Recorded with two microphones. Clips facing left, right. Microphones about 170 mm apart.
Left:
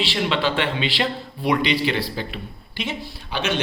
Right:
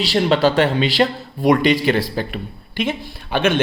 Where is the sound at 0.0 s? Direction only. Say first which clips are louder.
Right 7 dB; 40° right (ahead or behind).